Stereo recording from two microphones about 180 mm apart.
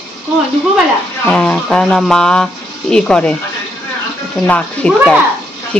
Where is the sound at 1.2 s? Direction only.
5° left (ahead or behind).